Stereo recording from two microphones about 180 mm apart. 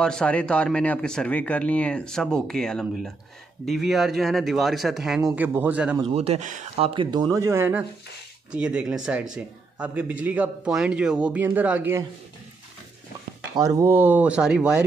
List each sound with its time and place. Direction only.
0.0 s a man's voice: 5° left (ahead or behind)
5.9 s speech: 30° right (ahead or behind)
6.9 s a man's voice: 25° right (ahead or behind); by 12.0 s 10° right (ahead or behind)
13.6 s speech: 15° right (ahead or behind)